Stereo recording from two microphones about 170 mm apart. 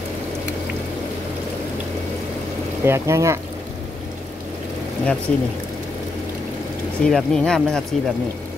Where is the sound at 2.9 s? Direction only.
15° right (ahead or behind).